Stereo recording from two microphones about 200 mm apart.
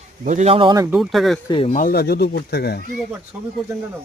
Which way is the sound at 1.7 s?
45° left (ahead or behind).